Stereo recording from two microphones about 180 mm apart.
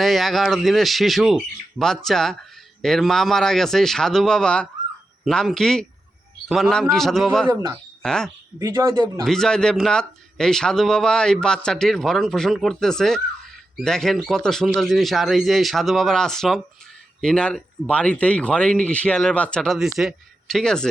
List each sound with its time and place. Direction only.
0.0 s speech: centre (ahead or behind)
7.5 s speech: 25° right (ahead or behind)
8.0 s speech: 5° left (ahead or behind)
8.5 s speech: 15° right (ahead or behind)
9.2 s speech: 5° left (ahead or behind)